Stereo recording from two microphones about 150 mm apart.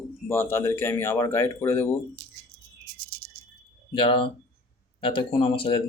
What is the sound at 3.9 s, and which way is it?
Speech, 35° left (ahead or behind).